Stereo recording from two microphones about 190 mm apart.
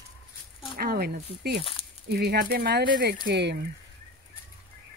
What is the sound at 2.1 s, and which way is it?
Speech, 55° right (ahead or behind).